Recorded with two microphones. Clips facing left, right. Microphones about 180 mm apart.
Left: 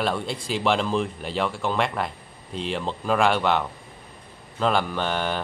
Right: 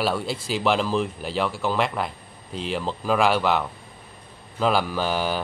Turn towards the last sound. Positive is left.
turn(degrees=-5)  # may be behind; listen again after turning